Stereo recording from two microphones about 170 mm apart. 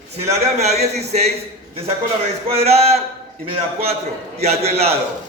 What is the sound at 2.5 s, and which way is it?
Speech, 35° right (ahead or behind).